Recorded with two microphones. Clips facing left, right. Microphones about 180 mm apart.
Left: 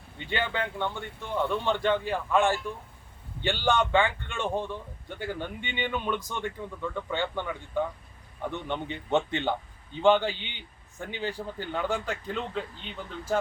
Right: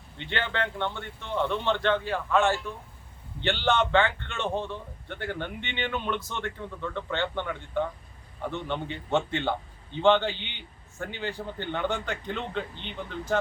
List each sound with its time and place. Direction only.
0.3 s a man's voice: 10° left (ahead or behind)